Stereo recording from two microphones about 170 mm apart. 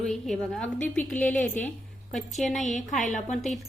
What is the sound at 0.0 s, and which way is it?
Speech, 5° left (ahead or behind).